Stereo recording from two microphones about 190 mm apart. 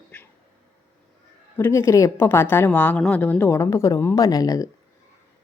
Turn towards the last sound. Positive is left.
turn(degrees=20)  # may be behind; listen again after turning